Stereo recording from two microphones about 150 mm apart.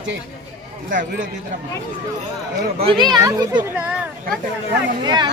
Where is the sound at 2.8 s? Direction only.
35° right (ahead or behind).